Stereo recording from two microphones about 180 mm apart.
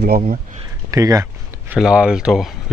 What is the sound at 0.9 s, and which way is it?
Speech, 20° right (ahead or behind).